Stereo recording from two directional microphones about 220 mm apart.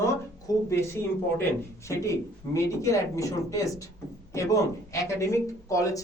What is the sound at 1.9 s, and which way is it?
Speech, 15° left (ahead or behind).